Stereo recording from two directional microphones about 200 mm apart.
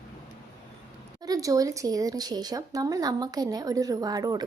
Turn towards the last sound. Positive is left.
turn(degrees=-20)  # may be behind; listen again after turning